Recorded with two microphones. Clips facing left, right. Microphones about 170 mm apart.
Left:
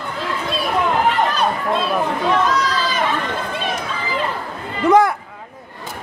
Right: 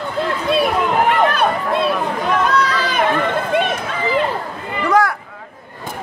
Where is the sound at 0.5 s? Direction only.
60° right (ahead or behind).